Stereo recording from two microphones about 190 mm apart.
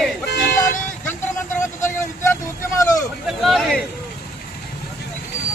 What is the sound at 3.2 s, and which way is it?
Speech, centre (ahead or behind).